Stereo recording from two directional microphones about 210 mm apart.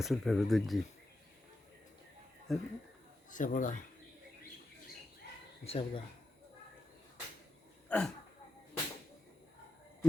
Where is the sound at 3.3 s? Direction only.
40° left (ahead or behind).